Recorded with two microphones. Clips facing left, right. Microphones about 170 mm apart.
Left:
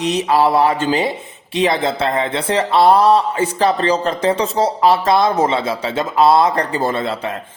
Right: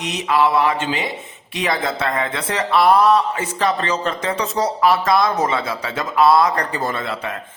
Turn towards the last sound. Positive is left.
turn(degrees=30)  # may be behind; listen again after turning